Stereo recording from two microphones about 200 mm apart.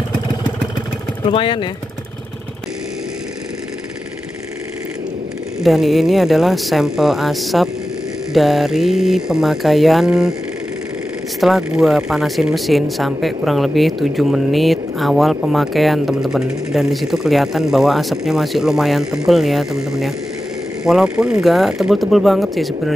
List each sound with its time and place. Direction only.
1.3 s speech: 25° left (ahead or behind)
5.6 s speech: centre (ahead or behind)
11.4 s speech: centre (ahead or behind)